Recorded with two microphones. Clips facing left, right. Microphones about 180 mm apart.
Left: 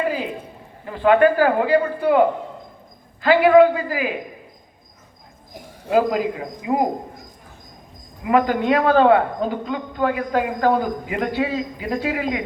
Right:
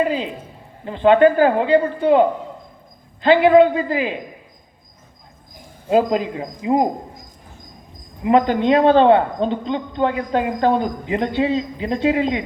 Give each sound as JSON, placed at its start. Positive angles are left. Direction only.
{"t": 0.0, "sound": "a sound", "side_deg": -25}
{"t": 0.9, "sound": "a man's voice", "side_deg": -25}
{"t": 5.9, "sound": "a man's voice", "side_deg": -25}
{"t": 8.2, "sound": "a man's voice", "side_deg": -25}